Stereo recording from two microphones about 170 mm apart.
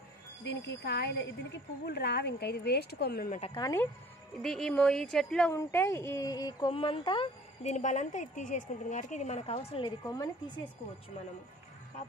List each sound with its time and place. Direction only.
0.4 s speech: 90° left; by 3.3 s 70° left (ahead or behind)
3.3 s a woman's voice: 40° left (ahead or behind)
3.5 s speech: 20° left (ahead or behind)
4.4 s a woman's voice: centre (ahead or behind)
5.5 s a woman's voice: 15° left (ahead or behind); by 7.7 s 30° left (ahead or behind)
7.7 s a woman's voice: 45° left (ahead or behind); by 10.7 s 25° left (ahead or behind)